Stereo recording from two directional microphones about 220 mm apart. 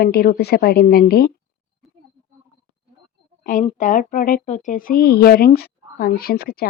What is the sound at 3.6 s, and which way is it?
Speech, 30° left (ahead or behind).